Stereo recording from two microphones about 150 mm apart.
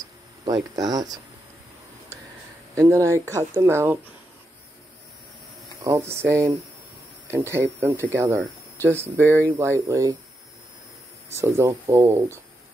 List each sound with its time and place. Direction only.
0.5 s speech: 25° right (ahead or behind)
2.7 s speech: 20° right (ahead or behind)
5.9 s speech: 15° right (ahead or behind)
11.3 s speech: 20° right (ahead or behind)